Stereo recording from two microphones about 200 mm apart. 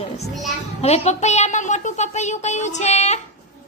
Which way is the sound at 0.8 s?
30° left (ahead or behind).